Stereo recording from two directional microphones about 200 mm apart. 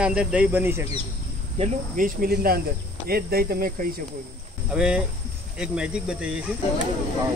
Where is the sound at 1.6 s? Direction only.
45° right (ahead or behind).